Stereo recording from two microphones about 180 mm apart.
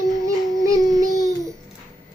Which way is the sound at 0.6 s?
20° right (ahead or behind).